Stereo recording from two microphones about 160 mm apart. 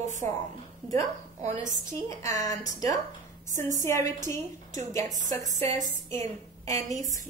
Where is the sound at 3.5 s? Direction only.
50° right (ahead or behind).